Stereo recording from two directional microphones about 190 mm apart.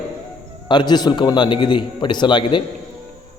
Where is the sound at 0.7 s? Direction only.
25° left (ahead or behind).